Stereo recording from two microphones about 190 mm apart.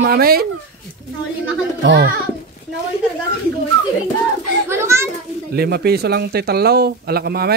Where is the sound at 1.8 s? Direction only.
65° right (ahead or behind).